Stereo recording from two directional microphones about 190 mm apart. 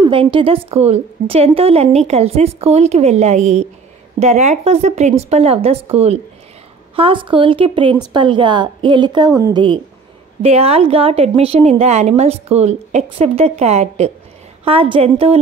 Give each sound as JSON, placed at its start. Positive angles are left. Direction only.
{"t": 0.0, "sound": "a woman's voice", "side_deg": -30}